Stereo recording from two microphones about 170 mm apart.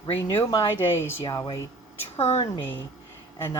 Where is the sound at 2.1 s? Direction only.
40° left (ahead or behind).